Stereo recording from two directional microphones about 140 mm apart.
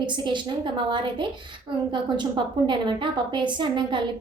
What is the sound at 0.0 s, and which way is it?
A woman's voice, 35° right (ahead or behind).